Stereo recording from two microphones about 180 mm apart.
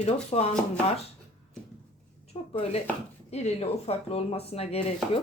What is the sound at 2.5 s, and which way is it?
Speech, 35° left (ahead or behind).